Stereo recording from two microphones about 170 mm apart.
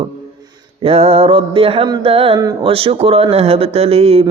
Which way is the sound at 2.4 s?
20° right (ahead or behind).